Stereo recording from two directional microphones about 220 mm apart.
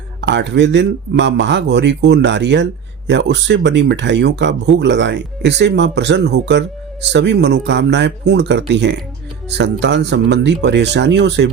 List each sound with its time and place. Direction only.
0.2 s speech: 55° right (ahead or behind)